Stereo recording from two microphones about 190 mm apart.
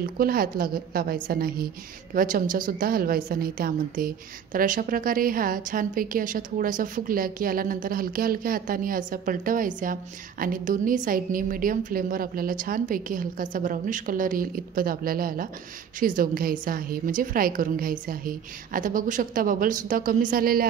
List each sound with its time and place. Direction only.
0.2 s a woman's voice: 50° right (ahead or behind)